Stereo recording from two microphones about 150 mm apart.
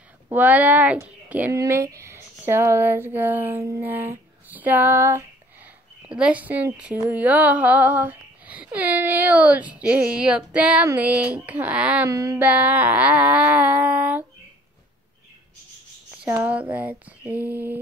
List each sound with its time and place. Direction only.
0.3 s speech: 10° right (ahead or behind)
12.1 s a sound: 20° right (ahead or behind)
12.4 s speech: 10° right (ahead or behind)
16.1 s speech: 10° right (ahead or behind)